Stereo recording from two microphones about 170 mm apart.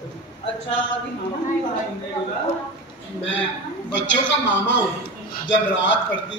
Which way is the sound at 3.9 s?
90° left.